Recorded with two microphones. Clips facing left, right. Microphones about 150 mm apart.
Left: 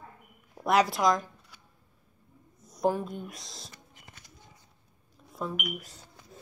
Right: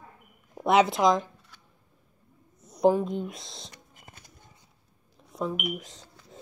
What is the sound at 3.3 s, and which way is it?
Speech, centre (ahead or behind).